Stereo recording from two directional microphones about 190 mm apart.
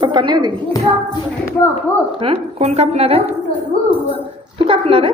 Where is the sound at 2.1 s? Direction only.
30° right (ahead or behind).